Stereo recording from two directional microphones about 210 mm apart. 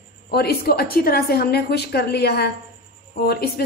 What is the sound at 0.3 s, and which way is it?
A woman's voice, 50° left (ahead or behind).